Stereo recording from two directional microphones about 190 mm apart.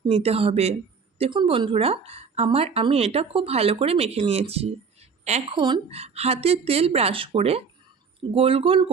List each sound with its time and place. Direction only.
0.1 s speech: 35° right (ahead or behind)